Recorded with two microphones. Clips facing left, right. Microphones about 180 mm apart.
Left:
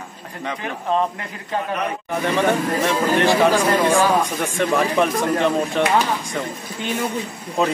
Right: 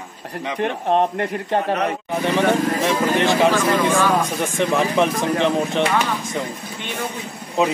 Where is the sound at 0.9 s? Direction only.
65° right (ahead or behind).